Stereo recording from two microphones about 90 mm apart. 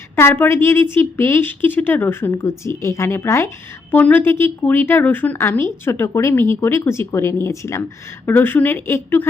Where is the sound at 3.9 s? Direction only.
20° left (ahead or behind).